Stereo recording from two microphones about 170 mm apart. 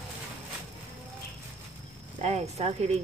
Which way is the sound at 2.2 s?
40° right (ahead or behind).